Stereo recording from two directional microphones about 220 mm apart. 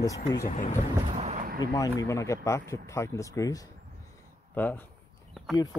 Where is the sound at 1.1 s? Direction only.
30° right (ahead or behind).